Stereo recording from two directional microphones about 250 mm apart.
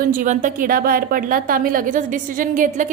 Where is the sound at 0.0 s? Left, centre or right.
Right.